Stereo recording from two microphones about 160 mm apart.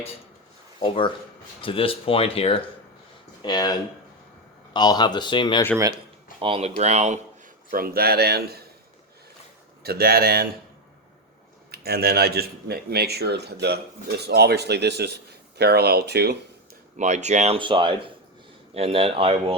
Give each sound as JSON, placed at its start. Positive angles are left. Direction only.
{"t": 0.8, "sound": "speech", "side_deg": 30}
{"t": 3.4, "sound": "speech", "side_deg": 25}
{"t": 6.4, "sound": "speech", "side_deg": -35}
{"t": 7.7, "sound": "speech", "side_deg": -65}
{"t": 9.8, "sound": "speech", "side_deg": -70}
{"t": 11.7, "sound": "speech", "side_deg": -75}
{"t": 17.0, "sound": "speech", "side_deg": -45}
{"t": 17.6, "sound": "speech", "side_deg": -30}